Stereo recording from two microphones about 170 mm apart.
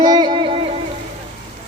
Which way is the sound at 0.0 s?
25° right (ahead or behind).